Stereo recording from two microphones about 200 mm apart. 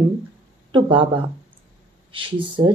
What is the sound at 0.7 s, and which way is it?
Speech, 25° right (ahead or behind).